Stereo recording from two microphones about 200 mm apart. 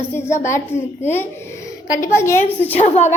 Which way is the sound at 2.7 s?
35° left (ahead or behind).